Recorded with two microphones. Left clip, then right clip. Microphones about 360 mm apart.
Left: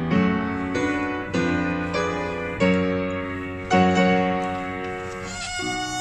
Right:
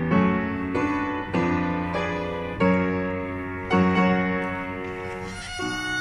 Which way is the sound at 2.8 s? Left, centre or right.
Right.